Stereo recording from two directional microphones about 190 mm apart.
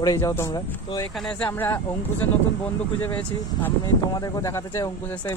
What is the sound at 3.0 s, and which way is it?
Speech, 10° left (ahead or behind).